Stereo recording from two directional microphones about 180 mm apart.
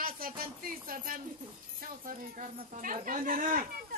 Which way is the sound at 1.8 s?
50° right (ahead or behind).